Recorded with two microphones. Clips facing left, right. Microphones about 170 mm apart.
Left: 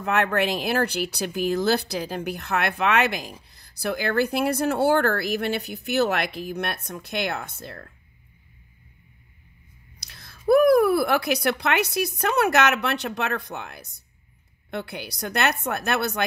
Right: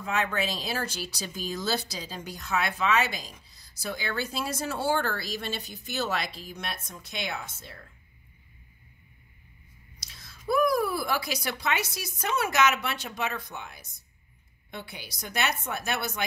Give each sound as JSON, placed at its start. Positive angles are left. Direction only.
{"t": 0.0, "sound": "speech", "side_deg": 65}
{"t": 9.9, "sound": "speech", "side_deg": 60}